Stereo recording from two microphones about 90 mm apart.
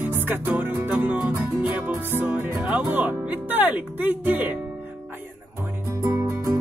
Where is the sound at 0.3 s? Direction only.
20° right (ahead or behind).